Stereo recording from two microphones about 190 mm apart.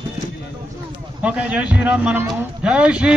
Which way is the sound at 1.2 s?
5° right (ahead or behind).